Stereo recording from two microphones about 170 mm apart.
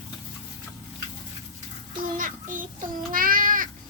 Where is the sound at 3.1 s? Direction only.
55° right (ahead or behind).